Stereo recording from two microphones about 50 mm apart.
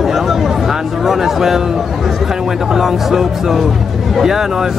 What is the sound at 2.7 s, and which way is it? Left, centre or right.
Speech, centre.